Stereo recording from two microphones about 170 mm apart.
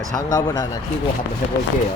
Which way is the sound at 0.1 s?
20° left (ahead or behind).